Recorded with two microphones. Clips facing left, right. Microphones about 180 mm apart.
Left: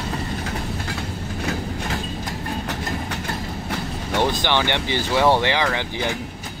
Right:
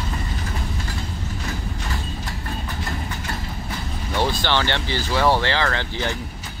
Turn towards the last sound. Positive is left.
turn(degrees=15)  # may be behind; listen again after turning